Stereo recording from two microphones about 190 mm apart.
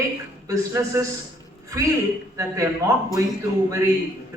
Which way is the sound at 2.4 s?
15° right (ahead or behind).